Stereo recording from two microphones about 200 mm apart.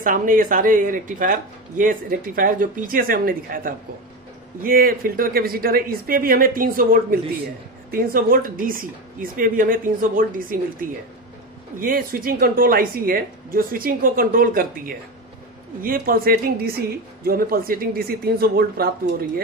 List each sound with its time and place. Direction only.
0.0 s speech: 40° right (ahead or behind)